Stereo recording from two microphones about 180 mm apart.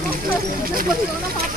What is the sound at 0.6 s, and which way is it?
Speech, 55° right (ahead or behind).